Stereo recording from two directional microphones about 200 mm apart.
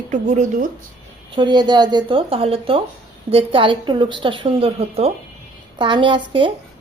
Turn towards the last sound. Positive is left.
turn(degrees=-25)  # may be behind; listen again after turning